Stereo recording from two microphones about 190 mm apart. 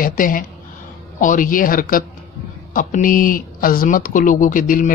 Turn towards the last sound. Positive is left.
turn(degrees=45)  # may be behind; listen again after turning